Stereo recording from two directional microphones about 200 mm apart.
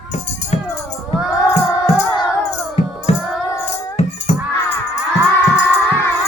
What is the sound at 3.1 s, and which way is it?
Music, 35° left (ahead or behind).